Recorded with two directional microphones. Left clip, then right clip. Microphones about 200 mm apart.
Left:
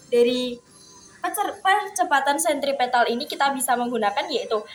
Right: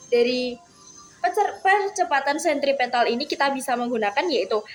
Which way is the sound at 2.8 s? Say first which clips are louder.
Left 1 dB; 25° right (ahead or behind).